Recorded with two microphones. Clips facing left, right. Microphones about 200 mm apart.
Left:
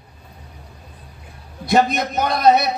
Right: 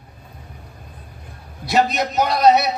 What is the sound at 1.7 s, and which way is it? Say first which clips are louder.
Speech: left 1 dB; 50° left (ahead or behind).